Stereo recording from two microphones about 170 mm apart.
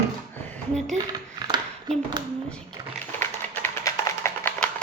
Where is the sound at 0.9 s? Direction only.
25° right (ahead or behind).